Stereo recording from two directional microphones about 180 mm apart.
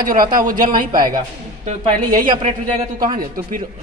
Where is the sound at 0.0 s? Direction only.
50° right (ahead or behind).